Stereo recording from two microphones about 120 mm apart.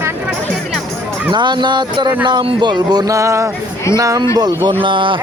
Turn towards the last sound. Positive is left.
turn(degrees=-45)  # may be behind; listen again after turning